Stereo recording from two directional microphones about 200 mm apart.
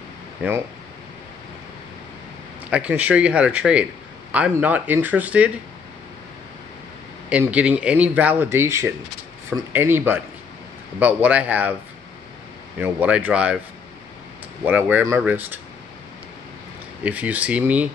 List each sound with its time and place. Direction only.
2.7 s speech: 10° right (ahead or behind)
7.2 s speech: 5° right (ahead or behind)
12.7 s speech: 10° right (ahead or behind)
14.6 s speech: 10° right (ahead or behind)
17.0 s speech: 5° right (ahead or behind)